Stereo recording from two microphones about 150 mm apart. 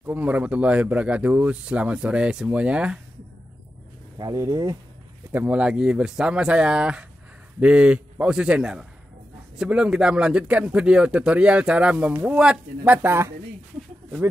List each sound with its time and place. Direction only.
0.0 s speech: 10° right (ahead or behind)
4.2 s speech: 25° right (ahead or behind)
5.3 s speech: 10° right (ahead or behind)